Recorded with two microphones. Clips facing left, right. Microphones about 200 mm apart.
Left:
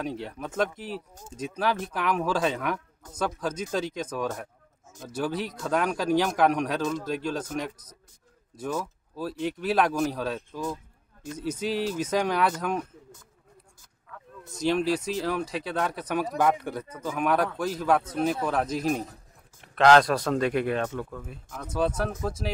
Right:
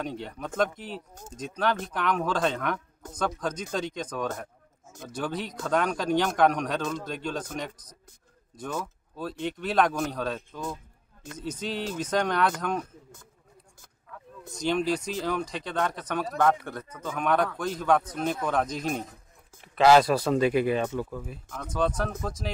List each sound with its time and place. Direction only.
0.0 s speech: 5° left (ahead or behind)
14.3 s speech: 5° left (ahead or behind)